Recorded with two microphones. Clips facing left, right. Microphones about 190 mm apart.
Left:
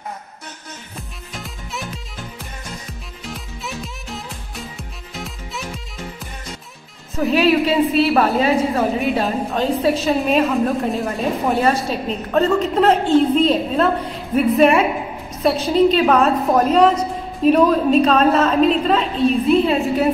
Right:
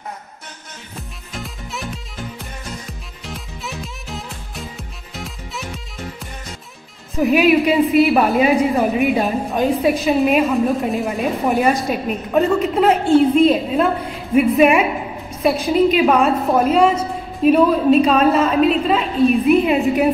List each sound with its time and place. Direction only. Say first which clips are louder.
1.3 s music: right 2 dB; centre (ahead or behind)
3.3 s music: even; centre (ahead or behind)
7.2 s a woman's voice: right 2 dB; 15° right (ahead or behind)
10.9 s speech: right 1 dB; centre (ahead or behind)
11.1 s a woman's voice: right 1 dB; 15° right (ahead or behind)